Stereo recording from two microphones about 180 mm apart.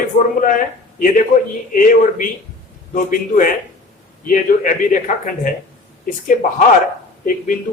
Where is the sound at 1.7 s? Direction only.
50° left (ahead or behind).